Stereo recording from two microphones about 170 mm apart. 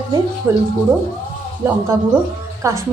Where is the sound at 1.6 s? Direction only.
15° right (ahead or behind).